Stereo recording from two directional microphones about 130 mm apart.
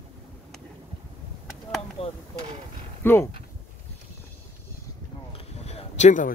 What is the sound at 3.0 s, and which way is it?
Speech, 20° left (ahead or behind).